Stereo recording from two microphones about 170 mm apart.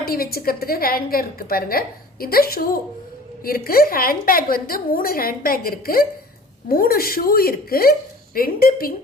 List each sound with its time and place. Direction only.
0.0 s a woman's voice: 60° left (ahead or behind)